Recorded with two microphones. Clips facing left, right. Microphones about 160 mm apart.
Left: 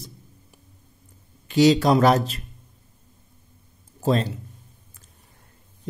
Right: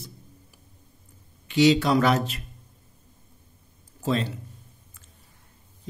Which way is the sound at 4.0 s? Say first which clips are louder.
Left 4 dB; 40° left (ahead or behind).